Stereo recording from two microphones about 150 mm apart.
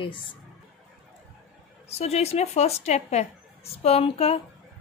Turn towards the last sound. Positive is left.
turn(degrees=40)  # may be behind; listen again after turning